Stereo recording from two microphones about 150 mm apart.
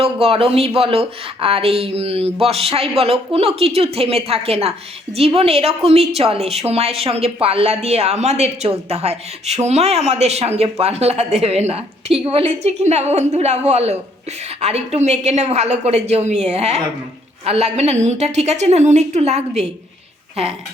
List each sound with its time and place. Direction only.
0.0 s a woman's voice: 40° right (ahead or behind)